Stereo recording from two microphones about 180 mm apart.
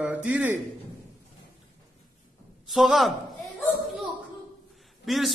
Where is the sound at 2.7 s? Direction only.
Centre (ahead or behind).